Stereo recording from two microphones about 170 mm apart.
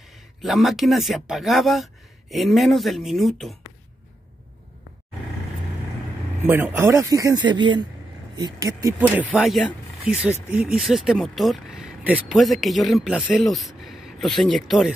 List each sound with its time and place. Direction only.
0.1 s speech: centre (ahead or behind)
6.4 s speech: 15° right (ahead or behind)
9.3 s speech: centre (ahead or behind)